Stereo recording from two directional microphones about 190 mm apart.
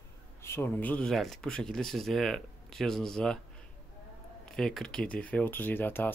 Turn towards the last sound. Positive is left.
turn(degrees=10)  # may be behind; listen again after turning